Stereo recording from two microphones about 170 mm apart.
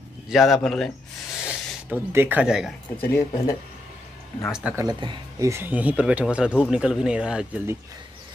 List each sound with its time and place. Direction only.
0.3 s speech: centre (ahead or behind)
1.4 s speech: 10° right (ahead or behind)
3.1 s speech: 15° left (ahead or behind)
4.5 s speech: 5° right (ahead or behind)
4.7 s speech: 25° right (ahead or behind)
5.5 s speech: 10° right (ahead or behind)